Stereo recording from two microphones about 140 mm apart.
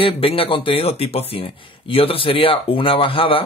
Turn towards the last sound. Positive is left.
turn(degrees=40)  # may be behind; listen again after turning